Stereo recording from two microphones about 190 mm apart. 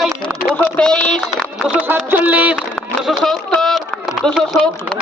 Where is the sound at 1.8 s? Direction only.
10° right (ahead or behind).